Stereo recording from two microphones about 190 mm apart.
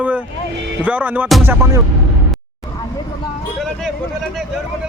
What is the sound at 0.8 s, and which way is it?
Music, 10° right (ahead or behind).